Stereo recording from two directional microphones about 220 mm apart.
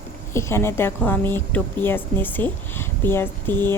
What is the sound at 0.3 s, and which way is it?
A woman's voice, 10° left (ahead or behind).